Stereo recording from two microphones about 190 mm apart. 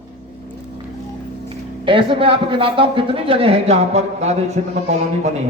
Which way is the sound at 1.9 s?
25° right (ahead or behind).